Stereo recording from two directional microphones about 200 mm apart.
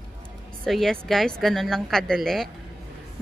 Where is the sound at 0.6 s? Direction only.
Centre (ahead or behind).